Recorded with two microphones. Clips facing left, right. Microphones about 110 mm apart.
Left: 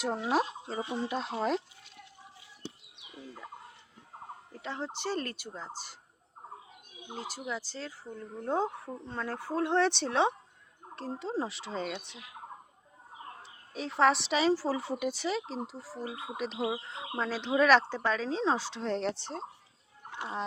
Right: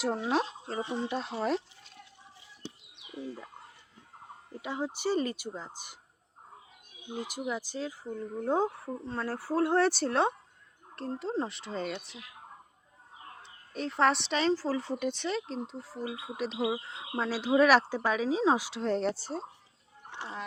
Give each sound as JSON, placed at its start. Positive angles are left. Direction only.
{"t": 0.0, "sound": "a woman's voice", "side_deg": 5}
{"t": 3.2, "sound": "fowl", "side_deg": -25}
{"t": 4.6, "sound": "speech", "side_deg": -10}
{"t": 7.2, "sound": "a woman's voice", "side_deg": -15}
{"t": 13.4, "sound": "a woman's voice", "side_deg": 0}